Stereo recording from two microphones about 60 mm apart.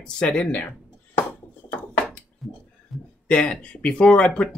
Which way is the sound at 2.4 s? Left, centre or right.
Centre.